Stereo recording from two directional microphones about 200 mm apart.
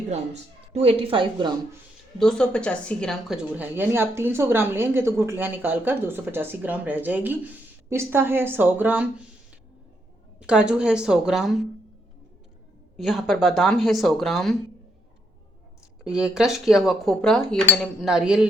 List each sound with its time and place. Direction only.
0.1 s speech: 30° right (ahead or behind)
2.1 s a woman's voice: 5° left (ahead or behind)
10.4 s cutlery: 5° right (ahead or behind)
13.0 s cutlery: centre (ahead or behind)
16.0 s cutlery: 5° right (ahead or behind)